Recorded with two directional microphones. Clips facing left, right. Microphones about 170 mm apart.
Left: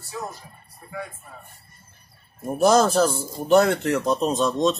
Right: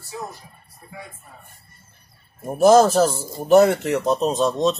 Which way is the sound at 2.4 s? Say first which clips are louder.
Right 4 dB; 5° right (ahead or behind).